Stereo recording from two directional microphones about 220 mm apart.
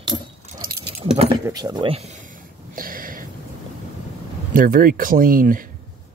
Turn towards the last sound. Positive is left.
turn(degrees=-40)  # may be behind; listen again after turning